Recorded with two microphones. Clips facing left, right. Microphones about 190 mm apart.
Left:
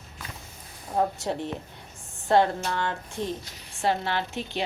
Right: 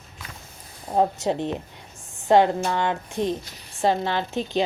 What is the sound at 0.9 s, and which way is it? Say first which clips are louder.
A woman's voice: right 5 dB; 20° right (ahead or behind).